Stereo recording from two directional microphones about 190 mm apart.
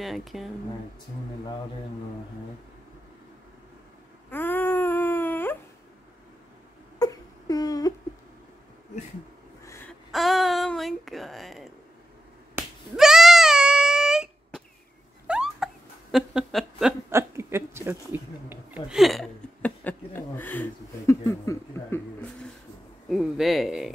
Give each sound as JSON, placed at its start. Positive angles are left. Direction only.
{"t": 0.0, "sound": "speech", "side_deg": 0}
{"t": 4.3, "sound": "wail", "side_deg": 10}
{"t": 7.0, "sound": "a sound", "side_deg": 20}
{"t": 9.7, "sound": "a sound", "side_deg": 10}
{"t": 10.1, "sound": "speech", "side_deg": 0}
{"t": 12.5, "sound": "finger snapping", "side_deg": -5}
{"t": 15.2, "sound": "hiccup", "side_deg": -5}
{"t": 21.1, "sound": "speech", "side_deg": 15}